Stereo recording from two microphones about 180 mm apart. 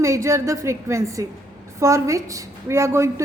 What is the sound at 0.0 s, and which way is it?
A woman's voice, 15° right (ahead or behind).